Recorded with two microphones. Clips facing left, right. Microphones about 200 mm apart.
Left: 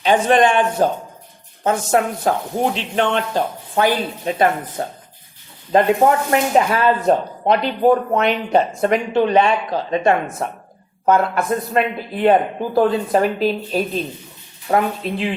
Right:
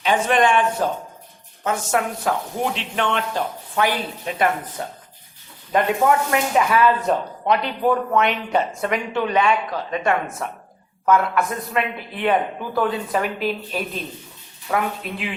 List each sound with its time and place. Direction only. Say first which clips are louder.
0.0 s speech: left 4 dB; 35° left (ahead or behind)